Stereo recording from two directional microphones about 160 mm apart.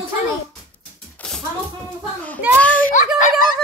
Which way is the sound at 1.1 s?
5° left (ahead or behind).